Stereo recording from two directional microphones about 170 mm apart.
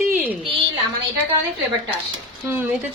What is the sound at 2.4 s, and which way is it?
Speech, 10° right (ahead or behind).